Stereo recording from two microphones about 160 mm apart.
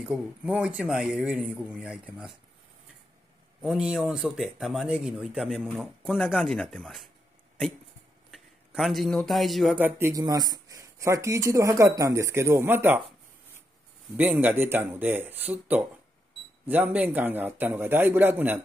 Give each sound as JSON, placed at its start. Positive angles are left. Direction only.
{"t": 0.0, "sound": "speech", "side_deg": -5}
{"t": 3.6, "sound": "speech", "side_deg": -5}
{"t": 8.3, "sound": "a man's voice", "side_deg": 0}
{"t": 9.8, "sound": "speech", "side_deg": -15}
{"t": 14.3, "sound": "a man's voice", "side_deg": -10}